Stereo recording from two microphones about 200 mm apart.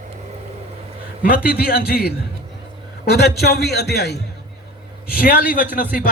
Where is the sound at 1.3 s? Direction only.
50° left (ahead or behind).